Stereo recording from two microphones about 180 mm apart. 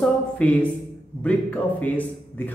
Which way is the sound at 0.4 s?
5° left (ahead or behind).